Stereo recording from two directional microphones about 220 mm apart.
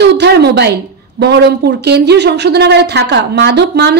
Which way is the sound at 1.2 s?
50° right (ahead or behind).